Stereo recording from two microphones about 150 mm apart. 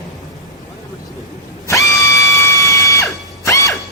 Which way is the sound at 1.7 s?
20° left (ahead or behind).